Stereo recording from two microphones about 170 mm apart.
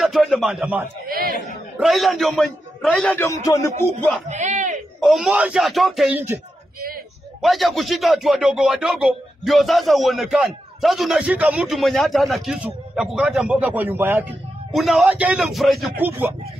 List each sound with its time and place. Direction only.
0.0 s a man's voice: centre (ahead or behind)
1.0 s chatter: 60° right (ahead or behind)
1.8 s a man's voice: centre (ahead or behind); by 3.7 s 20° left (ahead or behind)
4.3 s a sound: 45° right (ahead or behind)
5.0 s a man's voice: centre (ahead or behind)
6.1 s a man's voice: 10° right (ahead or behind)
7.4 s a man's voice: centre (ahead or behind)
14.7 s a man's voice: centre (ahead or behind)
16.0 s a man's voice: 10° right (ahead or behind)